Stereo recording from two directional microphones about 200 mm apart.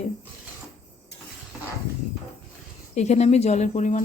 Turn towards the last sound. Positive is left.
turn(degrees=35)  # may be behind; listen again after turning